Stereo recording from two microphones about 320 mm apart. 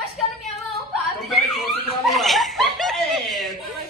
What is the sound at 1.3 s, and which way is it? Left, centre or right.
Chuckle, centre.